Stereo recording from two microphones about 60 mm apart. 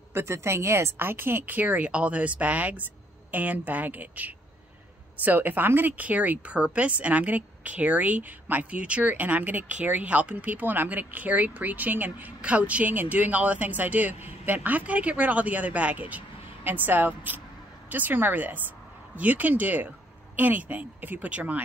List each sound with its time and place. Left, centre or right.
0.1 s speech: right
1.4 s a woman's voice: right